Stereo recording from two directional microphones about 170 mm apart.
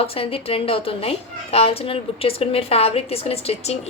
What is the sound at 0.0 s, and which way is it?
A woman's voice, 35° left (ahead or behind).